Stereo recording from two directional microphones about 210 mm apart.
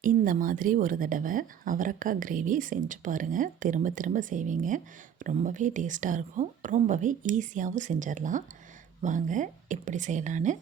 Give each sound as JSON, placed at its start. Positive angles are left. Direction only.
{"t": 0.0, "sound": "speech", "side_deg": -40}